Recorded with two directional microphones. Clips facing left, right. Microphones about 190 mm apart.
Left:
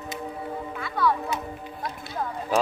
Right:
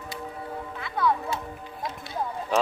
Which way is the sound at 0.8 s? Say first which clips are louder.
Left 1 dB; 20° right (ahead or behind).